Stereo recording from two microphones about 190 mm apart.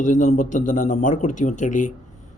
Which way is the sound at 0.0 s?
40° left (ahead or behind).